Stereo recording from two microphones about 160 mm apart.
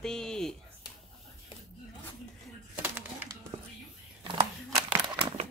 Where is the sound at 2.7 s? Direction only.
10° right (ahead or behind).